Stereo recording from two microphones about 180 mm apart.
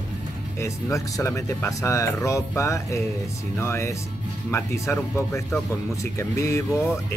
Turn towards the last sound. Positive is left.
turn(degrees=15)  # may be behind; listen again after turning